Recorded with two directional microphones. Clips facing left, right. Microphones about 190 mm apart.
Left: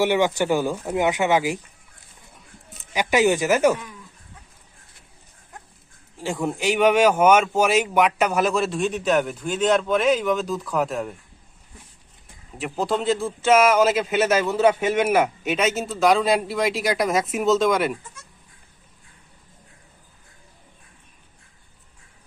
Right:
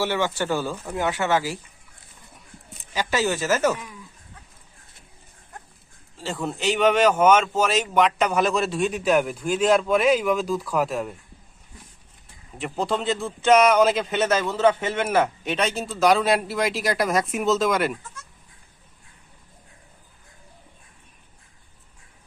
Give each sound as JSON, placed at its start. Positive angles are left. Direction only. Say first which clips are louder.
{"t": 0.0, "sound": "speech", "louder": "left 5 dB", "side_deg": 15}
{"t": 2.9, "sound": "speech", "louder": "left 5 dB", "side_deg": 15}
{"t": 6.1, "sound": "speech", "louder": "left 3 dB", "side_deg": 15}
{"t": 12.5, "sound": "speech", "louder": "left 1 dB", "side_deg": 0}